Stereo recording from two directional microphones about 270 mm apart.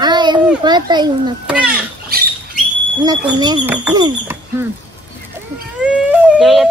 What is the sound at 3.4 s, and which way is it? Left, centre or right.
Speech, centre.